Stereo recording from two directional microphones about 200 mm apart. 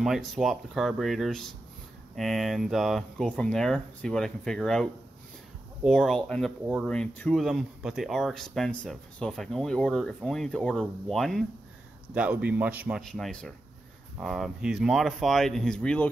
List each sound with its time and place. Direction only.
0.0 s speech: centre (ahead or behind)
5.9 s speech: centre (ahead or behind)